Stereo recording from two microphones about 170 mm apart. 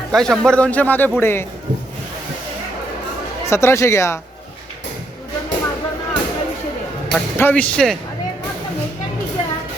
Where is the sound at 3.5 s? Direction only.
15° left (ahead or behind).